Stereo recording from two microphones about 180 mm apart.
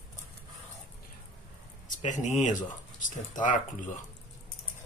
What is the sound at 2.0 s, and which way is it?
Speech, 40° left (ahead or behind).